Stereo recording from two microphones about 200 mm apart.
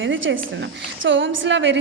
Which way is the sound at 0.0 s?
70° right (ahead or behind).